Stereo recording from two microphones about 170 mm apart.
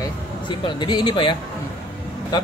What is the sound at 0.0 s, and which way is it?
Speech, 25° left (ahead or behind).